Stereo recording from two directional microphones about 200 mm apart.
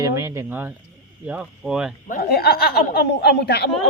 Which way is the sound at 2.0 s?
50° left (ahead or behind).